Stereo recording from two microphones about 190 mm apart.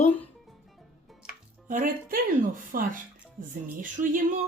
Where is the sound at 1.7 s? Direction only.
45° right (ahead or behind).